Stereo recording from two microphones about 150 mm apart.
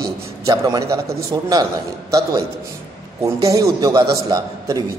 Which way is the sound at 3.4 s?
25° right (ahead or behind).